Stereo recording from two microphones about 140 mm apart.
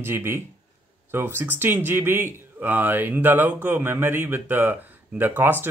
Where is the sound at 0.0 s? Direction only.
15° right (ahead or behind).